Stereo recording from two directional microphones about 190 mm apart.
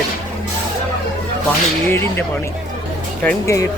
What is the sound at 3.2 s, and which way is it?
Speech, 15° left (ahead or behind).